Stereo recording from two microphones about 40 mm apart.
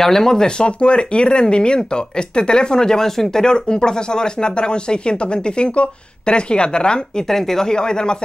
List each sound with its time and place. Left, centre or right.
0.0 s speech: centre
7.2 s speech: centre